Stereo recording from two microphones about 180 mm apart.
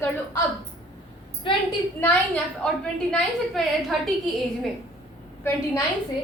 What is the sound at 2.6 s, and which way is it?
A woman's voice, 5° left (ahead or behind).